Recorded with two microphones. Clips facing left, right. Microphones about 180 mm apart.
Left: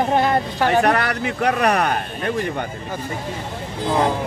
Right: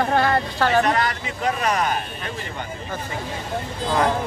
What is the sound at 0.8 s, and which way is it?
Speech, 65° left (ahead or behind).